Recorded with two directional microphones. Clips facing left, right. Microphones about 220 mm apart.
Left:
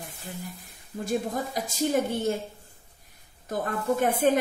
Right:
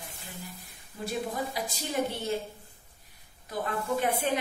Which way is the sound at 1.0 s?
45° left (ahead or behind).